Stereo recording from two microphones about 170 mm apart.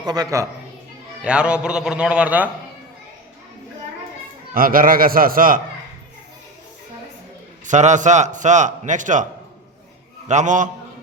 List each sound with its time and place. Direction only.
0.0 s a woman's voice: 25° right (ahead or behind)
1.2 s a man's voice: 5° right (ahead or behind)
4.5 s a man's voice: 55° right (ahead or behind)
7.6 s a man's voice: 45° right (ahead or behind)
10.2 s a man's voice: 45° right (ahead or behind)